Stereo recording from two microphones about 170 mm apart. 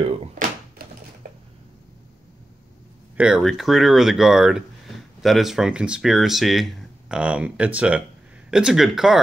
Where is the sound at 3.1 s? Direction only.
5° right (ahead or behind).